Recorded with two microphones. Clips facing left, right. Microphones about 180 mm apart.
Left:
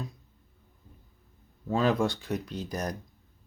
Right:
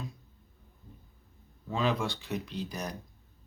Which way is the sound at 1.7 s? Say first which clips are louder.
Left 5 dB; 45° left (ahead or behind).